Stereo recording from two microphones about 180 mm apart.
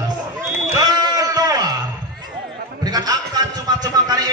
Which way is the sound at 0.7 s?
20° right (ahead or behind).